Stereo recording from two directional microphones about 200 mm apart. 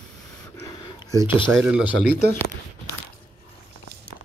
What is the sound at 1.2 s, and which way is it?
Speech, 25° left (ahead or behind).